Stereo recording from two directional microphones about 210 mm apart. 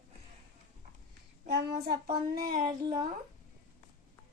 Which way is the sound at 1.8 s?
45° right (ahead or behind).